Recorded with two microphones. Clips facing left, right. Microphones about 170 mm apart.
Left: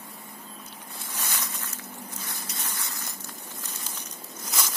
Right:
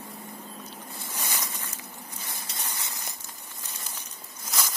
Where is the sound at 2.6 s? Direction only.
15° right (ahead or behind).